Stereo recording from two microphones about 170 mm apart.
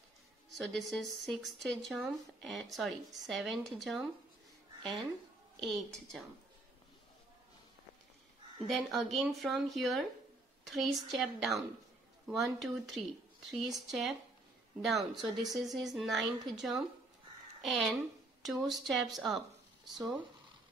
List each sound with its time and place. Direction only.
0.5 s speech: centre (ahead or behind)
5.6 s speech: centre (ahead or behind)
8.6 s a woman's voice: centre (ahead or behind)